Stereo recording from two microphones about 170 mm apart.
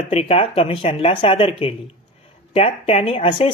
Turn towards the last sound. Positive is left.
turn(degrees=35)  # may be behind; listen again after turning